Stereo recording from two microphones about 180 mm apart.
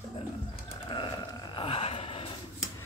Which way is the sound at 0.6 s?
30° left (ahead or behind).